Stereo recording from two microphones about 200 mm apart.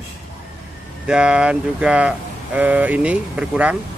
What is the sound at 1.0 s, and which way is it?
Speech, 5° right (ahead or behind).